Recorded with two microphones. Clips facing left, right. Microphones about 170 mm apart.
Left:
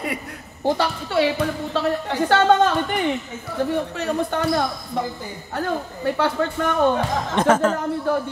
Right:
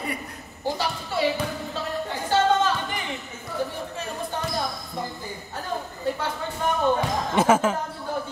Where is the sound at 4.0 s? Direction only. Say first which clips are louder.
Left 8 dB; 75° left (ahead or behind).